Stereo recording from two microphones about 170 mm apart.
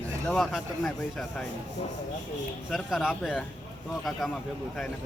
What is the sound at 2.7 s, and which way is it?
Speech, centre (ahead or behind).